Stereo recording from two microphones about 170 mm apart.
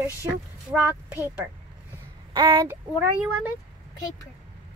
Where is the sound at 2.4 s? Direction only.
30° right (ahead or behind).